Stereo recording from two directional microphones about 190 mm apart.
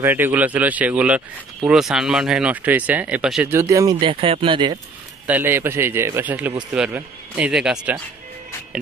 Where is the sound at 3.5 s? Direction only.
15° right (ahead or behind).